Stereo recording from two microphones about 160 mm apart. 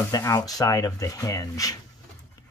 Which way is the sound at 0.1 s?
20° left (ahead or behind).